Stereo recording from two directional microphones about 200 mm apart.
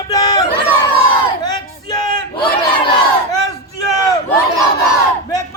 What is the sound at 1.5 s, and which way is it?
Battle cry, 20° left (ahead or behind).